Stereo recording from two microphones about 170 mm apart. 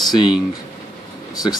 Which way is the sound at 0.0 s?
25° left (ahead or behind).